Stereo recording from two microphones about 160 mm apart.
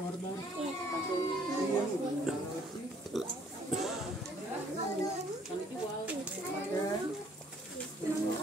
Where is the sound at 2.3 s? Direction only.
5° right (ahead or behind).